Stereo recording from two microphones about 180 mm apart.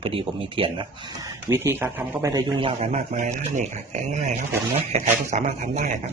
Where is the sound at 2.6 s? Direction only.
35° right (ahead or behind).